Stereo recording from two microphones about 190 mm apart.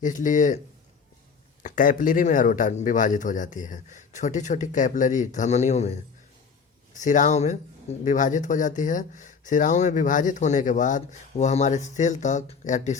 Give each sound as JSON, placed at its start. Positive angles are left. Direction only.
{"t": 0.0, "sound": "a man's voice", "side_deg": 40}
{"t": 1.6, "sound": "a man's voice", "side_deg": 45}